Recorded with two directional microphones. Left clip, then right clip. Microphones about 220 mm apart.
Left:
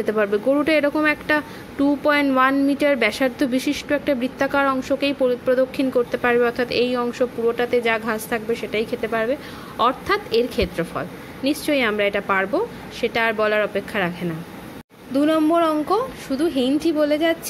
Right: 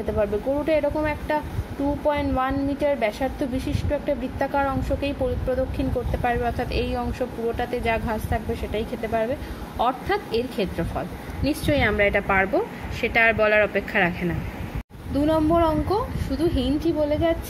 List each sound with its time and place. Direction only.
0.2 s a woman's voice: 30° left (ahead or behind)